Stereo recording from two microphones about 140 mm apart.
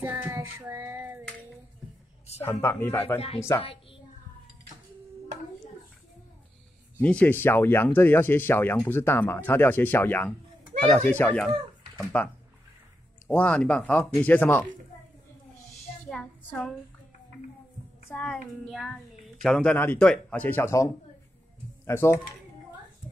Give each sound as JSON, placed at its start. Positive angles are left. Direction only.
{"t": 0.0, "sound": "child singing", "side_deg": -15}
{"t": 2.4, "sound": "speech", "side_deg": 15}
{"t": 3.6, "sound": "a child's voice", "side_deg": 40}
{"t": 7.0, "sound": "speech", "side_deg": 10}
{"t": 10.7, "sound": "a sound", "side_deg": -55}
{"t": 11.1, "sound": "speech", "side_deg": 10}
{"t": 13.3, "sound": "speech", "side_deg": 10}
{"t": 16.1, "sound": "child singing", "side_deg": 10}
{"t": 18.1, "sound": "speech", "side_deg": 5}